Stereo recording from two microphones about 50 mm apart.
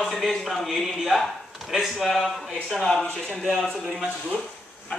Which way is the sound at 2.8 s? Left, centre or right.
Centre.